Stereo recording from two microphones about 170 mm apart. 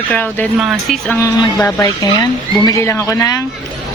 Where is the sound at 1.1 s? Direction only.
15° left (ahead or behind).